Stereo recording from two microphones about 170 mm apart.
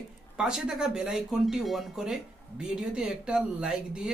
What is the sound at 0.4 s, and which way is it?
Speech, 5° right (ahead or behind).